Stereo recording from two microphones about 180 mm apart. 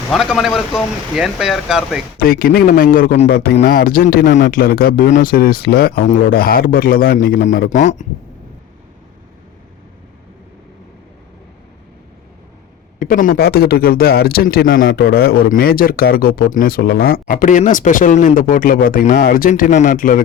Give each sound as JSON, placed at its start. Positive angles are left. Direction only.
{"t": 0.1, "sound": "speech", "side_deg": 0}
{"t": 2.1, "sound": "a man's voice", "side_deg": 55}
{"t": 13.0, "sound": "speech", "side_deg": 50}